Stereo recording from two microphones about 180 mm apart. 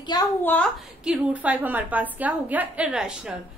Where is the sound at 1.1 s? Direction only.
5° right (ahead or behind).